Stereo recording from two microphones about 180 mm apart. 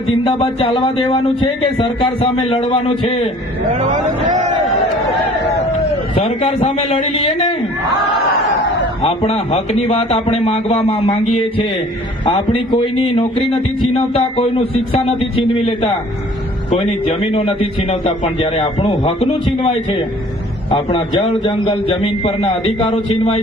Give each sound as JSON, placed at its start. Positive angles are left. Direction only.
{"t": 0.3, "sound": "a man's voice", "side_deg": 30}
{"t": 3.7, "sound": "a man's voice", "side_deg": -40}
{"t": 6.4, "sound": "a man's voice", "side_deg": 35}
{"t": 9.0, "sound": "a man's voice", "side_deg": 35}